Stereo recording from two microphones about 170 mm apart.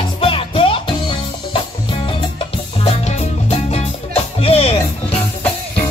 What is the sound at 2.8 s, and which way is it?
Music, 40° left (ahead or behind).